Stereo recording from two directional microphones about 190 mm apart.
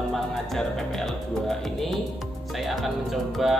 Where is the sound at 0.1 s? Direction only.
Centre (ahead or behind).